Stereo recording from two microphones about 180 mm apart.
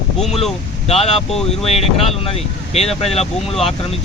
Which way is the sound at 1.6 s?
35° left (ahead or behind).